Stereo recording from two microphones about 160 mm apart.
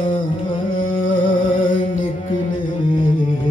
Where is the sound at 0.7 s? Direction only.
60° left (ahead or behind).